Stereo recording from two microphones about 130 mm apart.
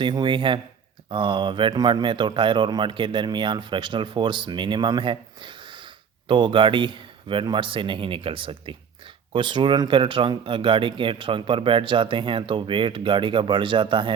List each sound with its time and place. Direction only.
0.0 s a man's voice: 35° right (ahead or behind)